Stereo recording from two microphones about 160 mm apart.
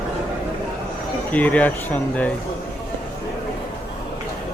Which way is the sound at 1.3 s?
10° left (ahead or behind).